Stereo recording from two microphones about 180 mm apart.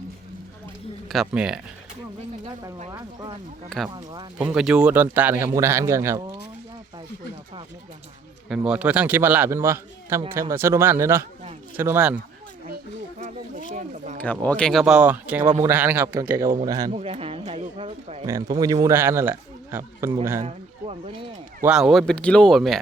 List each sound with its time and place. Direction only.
1.0 s speech: centre (ahead or behind)
2.9 s speech: 20° right (ahead or behind)
4.4 s a man's voice: 5° right (ahead or behind)
8.4 s a man's voice: 5° right (ahead or behind)
12.6 s a sound: 55° right (ahead or behind)
13.7 s a sound: 40° right (ahead or behind)
14.2 s a man's voice: 10° left (ahead or behind); by 16.9 s 20° right (ahead or behind)
16.9 s speech: 30° right (ahead or behind)
18.3 s a man's voice: 20° right (ahead or behind)
20.4 s speech: 35° right (ahead or behind)
21.6 s speech: 5° right (ahead or behind)